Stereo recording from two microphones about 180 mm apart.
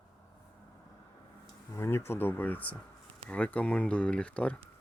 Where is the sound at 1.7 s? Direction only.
15° left (ahead or behind).